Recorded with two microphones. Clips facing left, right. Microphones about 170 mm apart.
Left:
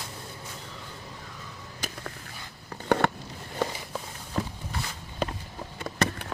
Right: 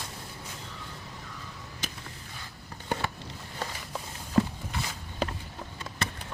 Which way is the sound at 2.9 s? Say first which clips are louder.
Left 8 dB; 65° left (ahead or behind).